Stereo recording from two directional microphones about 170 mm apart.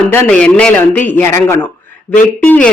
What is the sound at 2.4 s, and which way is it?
Speech, 10° left (ahead or behind).